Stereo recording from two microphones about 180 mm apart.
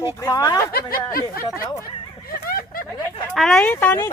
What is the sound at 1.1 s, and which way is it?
Speech, 55° left (ahead or behind).